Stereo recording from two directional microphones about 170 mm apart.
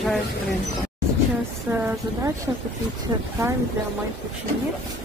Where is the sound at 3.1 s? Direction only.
20° right (ahead or behind).